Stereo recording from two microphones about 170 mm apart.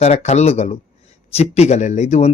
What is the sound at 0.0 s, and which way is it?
Speech, 40° left (ahead or behind).